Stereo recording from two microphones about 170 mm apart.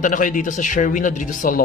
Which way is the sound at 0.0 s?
50° left (ahead or behind).